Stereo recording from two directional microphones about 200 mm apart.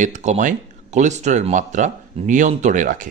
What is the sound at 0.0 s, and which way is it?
Speech, 35° right (ahead or behind).